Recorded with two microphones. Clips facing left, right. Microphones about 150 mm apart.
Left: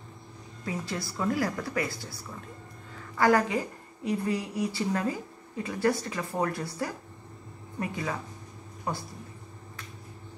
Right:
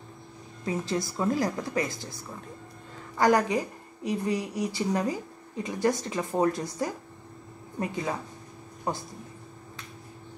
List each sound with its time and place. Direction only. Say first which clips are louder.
0.7 s a woman's voice: right 5 dB; 20° right (ahead or behind)
3.2 s a woman's voice: right 1 dB; 15° right (ahead or behind)